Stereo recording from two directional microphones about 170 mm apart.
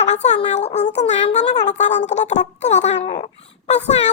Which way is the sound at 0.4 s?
40° left (ahead or behind).